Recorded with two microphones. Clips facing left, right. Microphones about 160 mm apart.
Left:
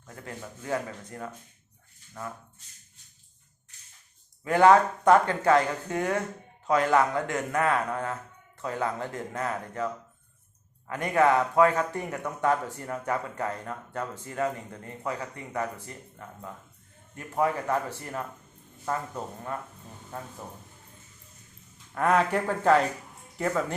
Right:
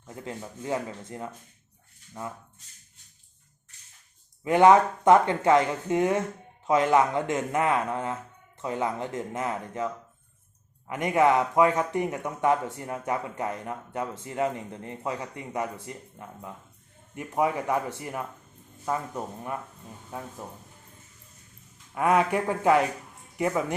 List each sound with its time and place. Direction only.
0.0 s a man's voice: 20° right (ahead or behind)
4.4 s a man's voice: 20° right (ahead or behind)
21.9 s a man's voice: 10° right (ahead or behind)